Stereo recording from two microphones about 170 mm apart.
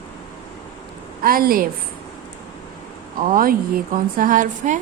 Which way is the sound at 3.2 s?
55° right (ahead or behind).